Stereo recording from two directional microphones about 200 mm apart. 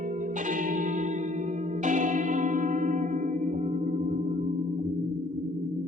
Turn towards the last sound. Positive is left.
turn(degrees=-35)  # may be behind; listen again after turning